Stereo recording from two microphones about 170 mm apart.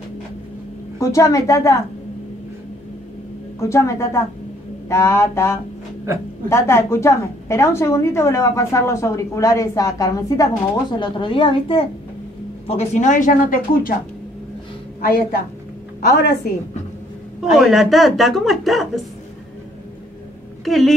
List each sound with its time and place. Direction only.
0.9 s a woman's voice: 20° left (ahead or behind)
3.5 s a woman's voice: 15° left (ahead or behind)
12.6 s speech: 40° left (ahead or behind)
15.0 s a woman's voice: 60° left (ahead or behind)
17.5 s a woman's voice: centre (ahead or behind)
20.6 s a woman's voice: centre (ahead or behind)